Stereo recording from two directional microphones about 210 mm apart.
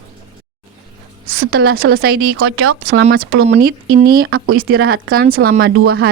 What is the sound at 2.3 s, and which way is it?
Speech, 90° right.